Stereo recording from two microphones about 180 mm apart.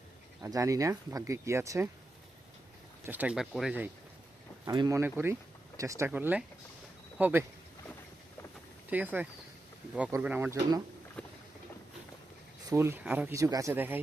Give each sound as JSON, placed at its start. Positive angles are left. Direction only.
{"t": 0.4, "sound": "speech", "side_deg": -20}
{"t": 3.0, "sound": "speech", "side_deg": -10}
{"t": 4.6, "sound": "speech", "side_deg": -20}
{"t": 8.9, "sound": "speech", "side_deg": -10}
{"t": 11.2, "sound": "boat", "side_deg": 5}
{"t": 12.6, "sound": "speech", "side_deg": -15}